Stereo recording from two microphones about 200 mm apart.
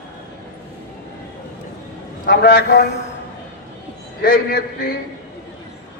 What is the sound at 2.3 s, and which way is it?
Speech, 55° left (ahead or behind).